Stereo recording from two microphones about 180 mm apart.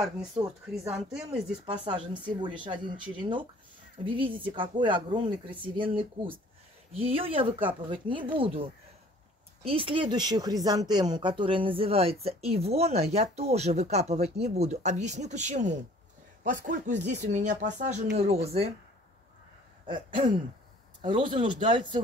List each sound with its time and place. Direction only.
0.4 s speech: 30° right (ahead or behind)
0.7 s speech: 5° right (ahead or behind)
2.4 s speech: 25° right (ahead or behind)
9.7 s speech: 30° right (ahead or behind)
19.9 s speech: 25° right (ahead or behind)